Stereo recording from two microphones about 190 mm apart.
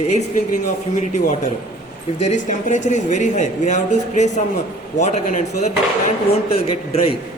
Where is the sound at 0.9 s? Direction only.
40° left (ahead or behind).